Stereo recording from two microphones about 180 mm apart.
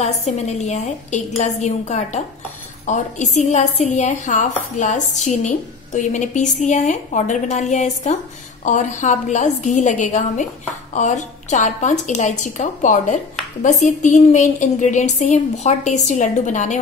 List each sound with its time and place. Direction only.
0.0 s a woman's voice: 40° left (ahead or behind)